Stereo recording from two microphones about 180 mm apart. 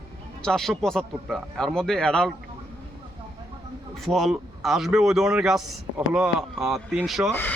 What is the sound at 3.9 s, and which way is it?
A man's voice, centre (ahead or behind).